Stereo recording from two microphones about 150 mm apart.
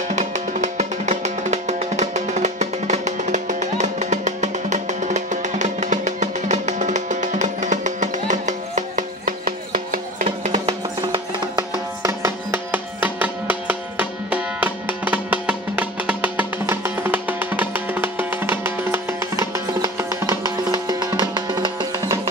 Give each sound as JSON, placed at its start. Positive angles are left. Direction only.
{"t": 0.1, "sound": "music", "side_deg": -55}
{"t": 10.5, "sound": "music", "side_deg": -35}
{"t": 12.0, "sound": "music", "side_deg": -20}